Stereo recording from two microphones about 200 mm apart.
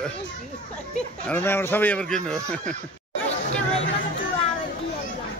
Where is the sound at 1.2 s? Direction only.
10° left (ahead or behind).